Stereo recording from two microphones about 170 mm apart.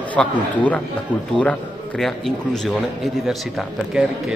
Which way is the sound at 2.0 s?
Centre (ahead or behind).